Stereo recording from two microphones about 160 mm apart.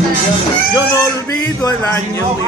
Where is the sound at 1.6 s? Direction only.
15° left (ahead or behind).